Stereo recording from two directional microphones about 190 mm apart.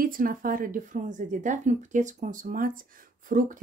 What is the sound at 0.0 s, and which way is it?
Speech, 45° right (ahead or behind).